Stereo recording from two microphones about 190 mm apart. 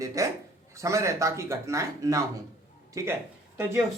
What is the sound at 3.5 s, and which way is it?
Speech, 10° right (ahead or behind).